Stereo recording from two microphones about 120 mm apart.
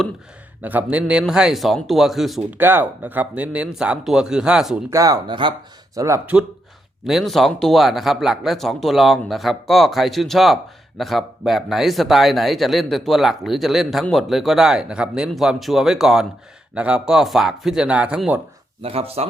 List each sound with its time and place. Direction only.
0.6 s speech: 15° right (ahead or behind)
2.5 s speech: 15° right (ahead or behind)
4.9 s speech: 30° right (ahead or behind)
7.0 s speech: centre (ahead or behind)
18.8 s speech: 55° right (ahead or behind)